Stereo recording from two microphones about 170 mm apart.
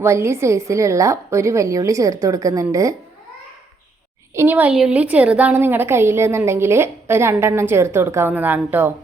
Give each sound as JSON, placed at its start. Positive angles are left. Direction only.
{"t": 0.0, "sound": "a woman's voice", "side_deg": -15}
{"t": 4.4, "sound": "a woman's voice", "side_deg": -10}